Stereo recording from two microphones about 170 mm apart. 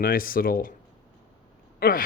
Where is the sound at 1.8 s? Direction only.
60° left (ahead or behind).